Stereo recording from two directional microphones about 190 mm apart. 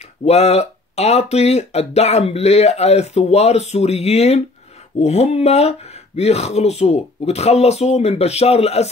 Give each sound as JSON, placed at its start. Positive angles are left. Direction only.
{"t": 0.2, "sound": "speech", "side_deg": 35}